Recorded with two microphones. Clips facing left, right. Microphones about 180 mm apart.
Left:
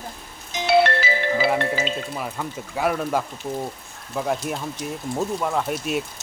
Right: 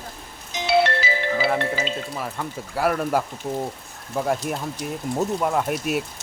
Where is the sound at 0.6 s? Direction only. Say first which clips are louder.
Left 2 dB; 55° left (ahead or behind).